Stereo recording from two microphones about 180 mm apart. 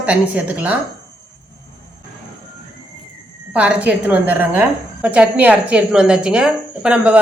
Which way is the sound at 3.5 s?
5° right (ahead or behind).